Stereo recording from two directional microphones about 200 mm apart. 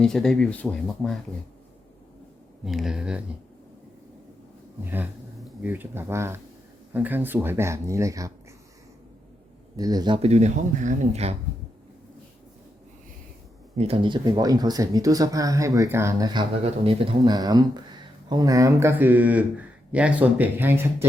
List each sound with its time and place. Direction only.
0.0 s speech: centre (ahead or behind)
2.6 s speech: centre (ahead or behind)
4.9 s speech: 5° right (ahead or behind)
9.7 s speech: 20° right (ahead or behind)
13.7 s speech: 30° right (ahead or behind)
16.6 s speech: 30° right (ahead or behind); by 21.1 s 10° right (ahead or behind)